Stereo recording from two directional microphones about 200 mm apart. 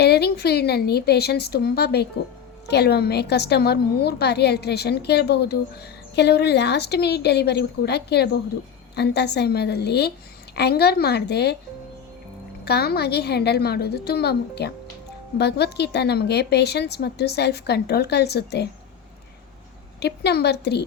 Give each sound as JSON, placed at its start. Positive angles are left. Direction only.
{"t": 0.0, "sound": "a woman's voice", "side_deg": 55}
{"t": 12.6, "sound": "a woman's voice", "side_deg": 55}
{"t": 20.0, "sound": "a woman's voice", "side_deg": 55}